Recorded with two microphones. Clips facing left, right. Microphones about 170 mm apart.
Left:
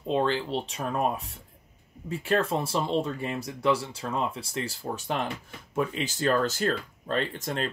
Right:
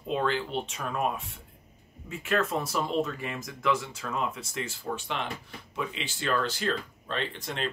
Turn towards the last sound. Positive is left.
turn(degrees=45)  # may be behind; listen again after turning